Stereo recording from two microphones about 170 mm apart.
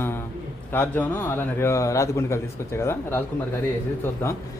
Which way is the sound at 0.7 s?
10° left (ahead or behind).